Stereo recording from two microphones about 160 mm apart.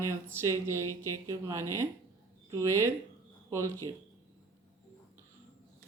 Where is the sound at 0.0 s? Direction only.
15° right (ahead or behind).